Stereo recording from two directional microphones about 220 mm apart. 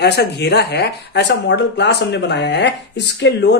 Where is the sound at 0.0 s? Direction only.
50° left (ahead or behind).